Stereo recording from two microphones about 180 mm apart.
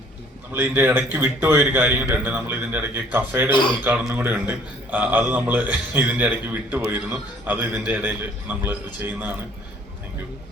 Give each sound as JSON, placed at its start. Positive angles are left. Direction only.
{"t": 0.5, "sound": "a man's voice", "side_deg": -10}